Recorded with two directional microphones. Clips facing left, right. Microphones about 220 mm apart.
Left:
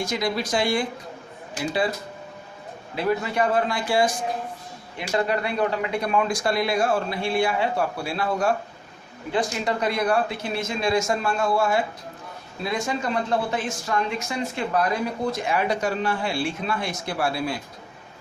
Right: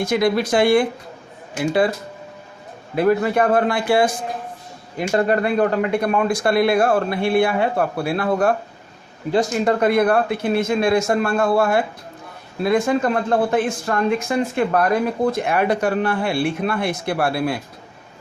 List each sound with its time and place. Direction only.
0.0 s speech: 60° right (ahead or behind)
2.9 s a man's voice: 55° right (ahead or behind)
4.9 s speech: 50° right (ahead or behind)